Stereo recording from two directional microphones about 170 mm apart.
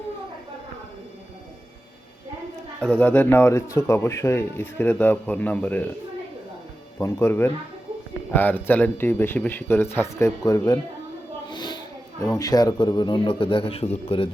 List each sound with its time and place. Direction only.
2.8 s speech: 10° left (ahead or behind)
7.0 s speech: 15° left (ahead or behind)
11.4 s a sound: 25° left (ahead or behind)
12.2 s a man's voice: 20° left (ahead or behind); by 14.3 s 35° left (ahead or behind)